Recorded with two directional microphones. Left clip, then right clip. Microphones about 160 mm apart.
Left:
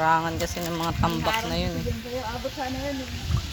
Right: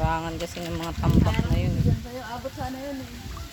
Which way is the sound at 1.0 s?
20° left (ahead or behind).